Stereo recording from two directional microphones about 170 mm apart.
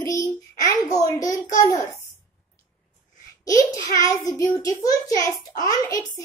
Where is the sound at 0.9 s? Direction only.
20° left (ahead or behind).